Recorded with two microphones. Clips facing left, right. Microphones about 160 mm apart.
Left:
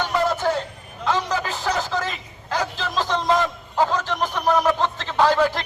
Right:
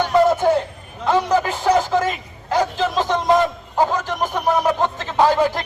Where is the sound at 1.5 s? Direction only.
15° right (ahead or behind).